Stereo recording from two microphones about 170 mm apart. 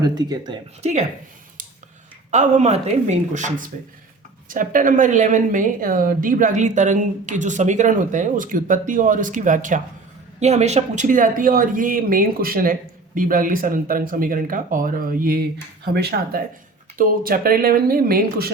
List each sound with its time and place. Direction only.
0.0 s a woman's voice: 25° right (ahead or behind)
0.8 s a woman's voice: 40° right (ahead or behind)
2.3 s speech: 45° right (ahead or behind)
15.8 s speech: 70° right (ahead or behind)
17.0 s speech: 55° right (ahead or behind)